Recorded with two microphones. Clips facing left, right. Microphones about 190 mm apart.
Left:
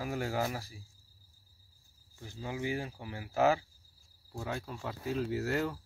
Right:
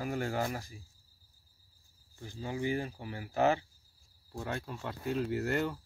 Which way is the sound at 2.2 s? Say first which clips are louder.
Right 2 dB; 5° left (ahead or behind).